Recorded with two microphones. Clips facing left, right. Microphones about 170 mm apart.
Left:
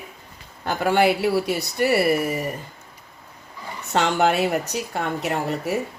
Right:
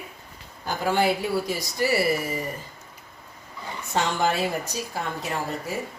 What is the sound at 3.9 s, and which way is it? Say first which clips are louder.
A woman's voice: left 5 dB; 70° left (ahead or behind).